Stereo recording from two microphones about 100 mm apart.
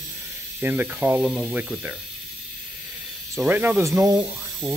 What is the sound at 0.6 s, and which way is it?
Speech, 15° right (ahead or behind).